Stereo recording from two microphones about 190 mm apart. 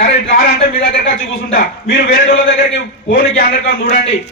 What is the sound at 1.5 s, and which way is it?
Speech, 50° left (ahead or behind).